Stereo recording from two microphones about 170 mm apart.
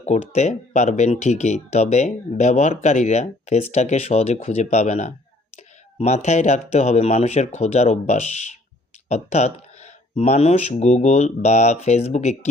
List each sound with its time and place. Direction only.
0.0 s speech: 40° left (ahead or behind)